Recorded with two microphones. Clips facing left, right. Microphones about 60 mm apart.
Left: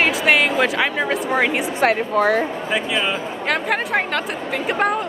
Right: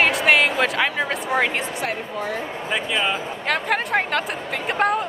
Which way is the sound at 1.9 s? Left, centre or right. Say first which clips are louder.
Left 10 dB; left.